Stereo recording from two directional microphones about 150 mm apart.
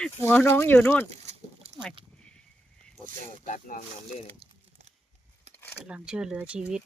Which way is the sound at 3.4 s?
55° left (ahead or behind).